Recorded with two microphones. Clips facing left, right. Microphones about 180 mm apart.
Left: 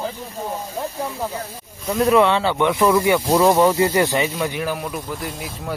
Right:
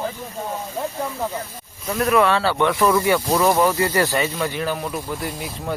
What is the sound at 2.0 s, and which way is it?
Speech, 20° left (ahead or behind).